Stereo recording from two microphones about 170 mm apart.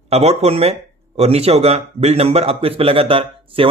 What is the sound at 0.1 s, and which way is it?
Speech, 40° right (ahead or behind).